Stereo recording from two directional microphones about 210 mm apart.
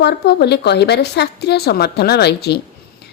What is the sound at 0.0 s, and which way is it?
A woman's voice, 50° left (ahead or behind).